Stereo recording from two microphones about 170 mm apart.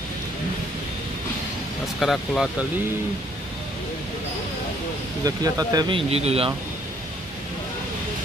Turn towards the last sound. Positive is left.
turn(degrees=-35)  # may be behind; listen again after turning